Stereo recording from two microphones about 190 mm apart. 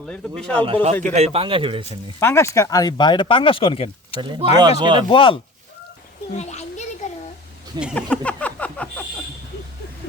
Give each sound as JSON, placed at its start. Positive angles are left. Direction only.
{"t": 0.0, "sound": "speech", "side_deg": 5}
{"t": 0.6, "sound": "speech", "side_deg": -30}
{"t": 2.1, "sound": "speech", "side_deg": 15}
{"t": 4.2, "sound": "speech", "side_deg": -25}
{"t": 5.0, "sound": "speech", "side_deg": 30}
{"t": 6.3, "sound": "a sound", "side_deg": 35}
{"t": 7.7, "sound": "speech", "side_deg": -20}
{"t": 8.2, "sound": "a sound", "side_deg": 5}